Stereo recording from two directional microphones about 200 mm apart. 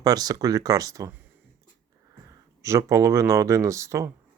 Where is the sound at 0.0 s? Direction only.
20° right (ahead or behind).